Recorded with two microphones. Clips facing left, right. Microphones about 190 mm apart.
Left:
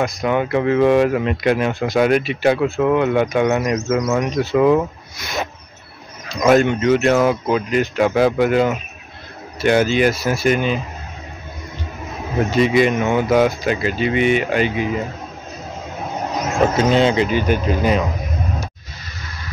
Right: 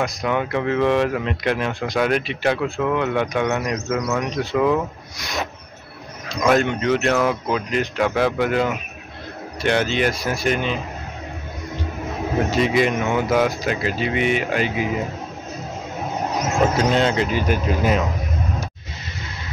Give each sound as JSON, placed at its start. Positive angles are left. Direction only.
{"t": 0.0, "sound": "speech", "side_deg": 5}
{"t": 4.0, "sound": "speech", "side_deg": 15}
{"t": 4.4, "sound": "speech", "side_deg": 5}
{"t": 12.4, "sound": "speech", "side_deg": 0}
{"t": 16.7, "sound": "speech", "side_deg": 0}